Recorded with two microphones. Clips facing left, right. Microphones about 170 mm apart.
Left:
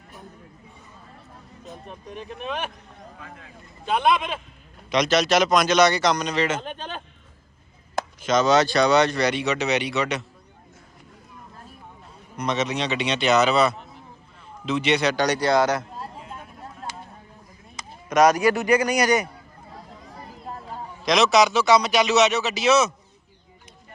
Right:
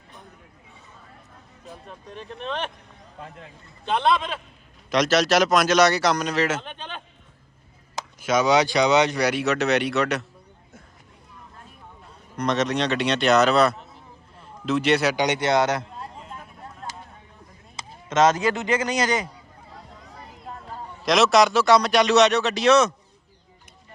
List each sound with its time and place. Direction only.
1.9 s speech: 15° left (ahead or behind)
3.8 s speech: 10° left (ahead or behind)
4.9 s a man's voice: centre (ahead or behind)
6.6 s a sound: 40° left (ahead or behind)
8.2 s speech: 10° right (ahead or behind)
12.4 s a man's voice: centre (ahead or behind)
15.1 s a man's voice: 20° right (ahead or behind)
16.2 s vehicle: centre (ahead or behind)
17.7 s a sound: 25° right (ahead or behind)
18.4 s a man's voice: 20° right (ahead or behind)
20.1 s a sound: 25° left (ahead or behind)
20.8 s a man's voice: centre (ahead or behind)